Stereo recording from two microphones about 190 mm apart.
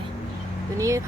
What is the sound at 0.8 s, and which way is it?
Speech, 15° right (ahead or behind).